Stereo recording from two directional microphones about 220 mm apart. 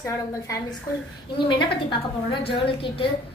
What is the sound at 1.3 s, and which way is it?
A woman's voice, 20° left (ahead or behind).